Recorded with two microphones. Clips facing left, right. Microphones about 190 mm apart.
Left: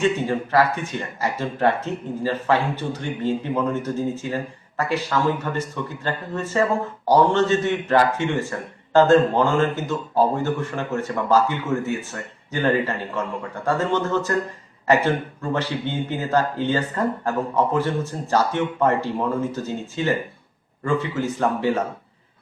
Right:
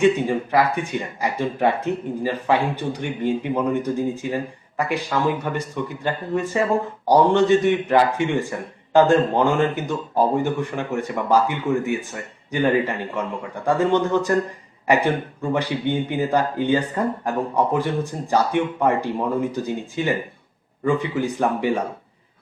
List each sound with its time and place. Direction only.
0.0 s speech: 15° right (ahead or behind)